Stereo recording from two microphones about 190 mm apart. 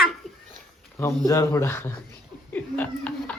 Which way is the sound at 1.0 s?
15° left (ahead or behind).